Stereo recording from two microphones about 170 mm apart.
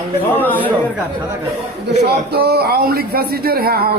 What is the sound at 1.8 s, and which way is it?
A man's voice, 70° right (ahead or behind).